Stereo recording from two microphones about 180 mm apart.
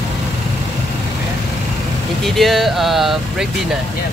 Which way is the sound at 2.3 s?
Centre (ahead or behind).